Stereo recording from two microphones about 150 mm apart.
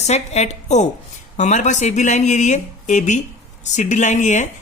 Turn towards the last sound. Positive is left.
turn(degrees=55)  # may be behind; listen again after turning